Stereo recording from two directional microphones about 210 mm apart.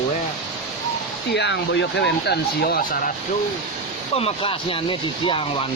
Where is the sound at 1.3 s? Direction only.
55° left (ahead or behind).